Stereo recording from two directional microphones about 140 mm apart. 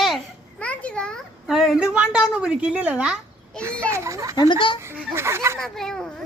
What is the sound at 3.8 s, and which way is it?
Speech, 20° right (ahead or behind).